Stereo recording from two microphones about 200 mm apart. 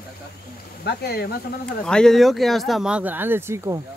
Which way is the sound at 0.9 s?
55° left (ahead or behind).